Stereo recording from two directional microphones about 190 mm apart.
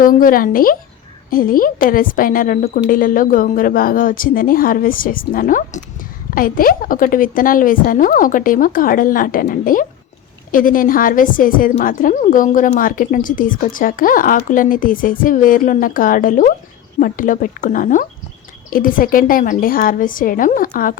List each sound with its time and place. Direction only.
0.0 s a woman's voice: 45° left (ahead or behind)